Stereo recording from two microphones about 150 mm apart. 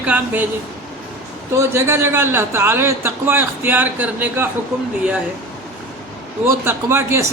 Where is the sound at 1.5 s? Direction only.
15° right (ahead or behind).